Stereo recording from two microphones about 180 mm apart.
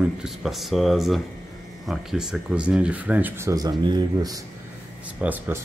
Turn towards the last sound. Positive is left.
turn(degrees=-10)  # may be behind; listen again after turning